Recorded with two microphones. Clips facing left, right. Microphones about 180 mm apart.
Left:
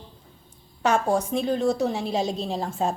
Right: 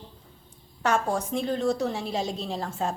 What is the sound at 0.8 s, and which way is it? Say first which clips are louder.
A woman's voice: left 3 dB; 15° left (ahead or behind).